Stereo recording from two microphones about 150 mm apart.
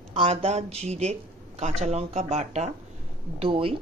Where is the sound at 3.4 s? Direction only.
40° right (ahead or behind).